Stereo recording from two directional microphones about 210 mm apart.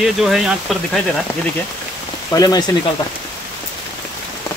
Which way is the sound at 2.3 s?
15° left (ahead or behind).